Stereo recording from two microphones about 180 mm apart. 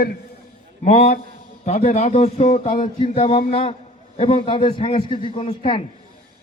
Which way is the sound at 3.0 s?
30° left (ahead or behind).